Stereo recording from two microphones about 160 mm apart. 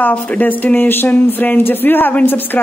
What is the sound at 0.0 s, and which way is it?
Speech, 10° left (ahead or behind).